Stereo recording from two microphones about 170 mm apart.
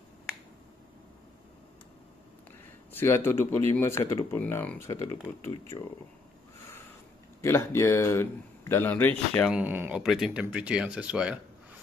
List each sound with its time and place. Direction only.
2.9 s speech: 15° left (ahead or behind)
7.4 s speech: 15° left (ahead or behind)
9.5 s speech: 10° right (ahead or behind)